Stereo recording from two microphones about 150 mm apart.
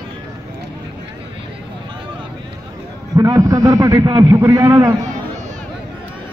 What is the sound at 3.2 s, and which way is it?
A man's voice, 20° right (ahead or behind).